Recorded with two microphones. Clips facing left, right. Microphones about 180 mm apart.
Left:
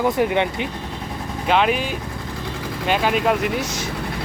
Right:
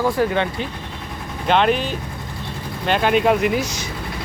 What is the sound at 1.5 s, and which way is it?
Speech, 5° left (ahead or behind).